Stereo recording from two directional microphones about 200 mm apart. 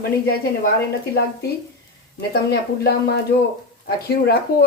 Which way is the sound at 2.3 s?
55° left (ahead or behind).